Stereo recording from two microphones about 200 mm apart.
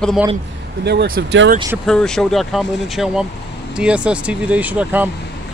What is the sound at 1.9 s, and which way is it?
Speech, 5° left (ahead or behind).